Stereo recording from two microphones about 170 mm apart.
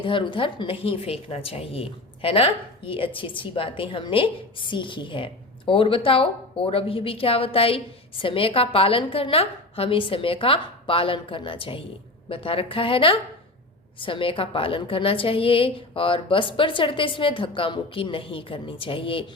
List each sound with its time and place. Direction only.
0.0 s a woman's voice: 30° left (ahead or behind)